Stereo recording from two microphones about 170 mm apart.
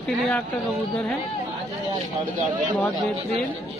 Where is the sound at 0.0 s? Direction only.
5° left (ahead or behind).